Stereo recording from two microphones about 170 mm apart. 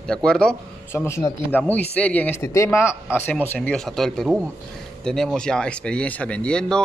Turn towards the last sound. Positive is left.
turn(degrees=5)  # may be behind; listen again after turning